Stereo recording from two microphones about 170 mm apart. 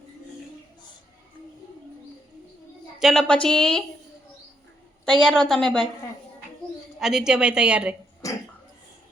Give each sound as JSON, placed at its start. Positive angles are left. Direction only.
{"t": 3.0, "sound": "a woman's voice", "side_deg": 0}
{"t": 5.2, "sound": "a woman's voice", "side_deg": 5}
{"t": 7.0, "sound": "a woman's voice", "side_deg": -5}
{"t": 8.2, "sound": "cough", "side_deg": 20}